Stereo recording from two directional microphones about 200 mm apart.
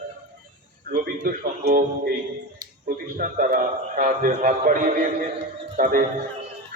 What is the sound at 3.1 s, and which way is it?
A man's voice, 45° right (ahead or behind).